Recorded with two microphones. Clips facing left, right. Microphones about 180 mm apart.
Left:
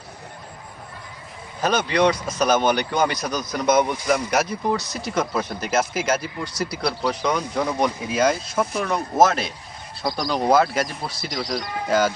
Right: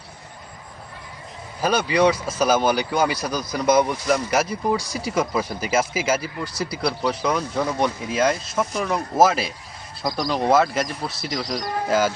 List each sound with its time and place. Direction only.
1.9 s speech: 10° right (ahead or behind)